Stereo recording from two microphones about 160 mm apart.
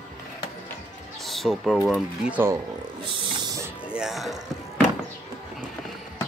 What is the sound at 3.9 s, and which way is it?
Music, centre (ahead or behind).